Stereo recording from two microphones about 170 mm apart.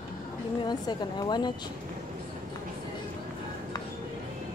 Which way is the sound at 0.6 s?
25° left (ahead or behind).